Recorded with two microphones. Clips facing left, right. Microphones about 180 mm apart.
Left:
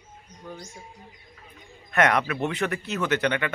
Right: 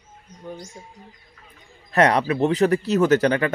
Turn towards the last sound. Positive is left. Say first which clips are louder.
# right 7 dB
turn(degrees=-40)  # may be behind; listen again after turning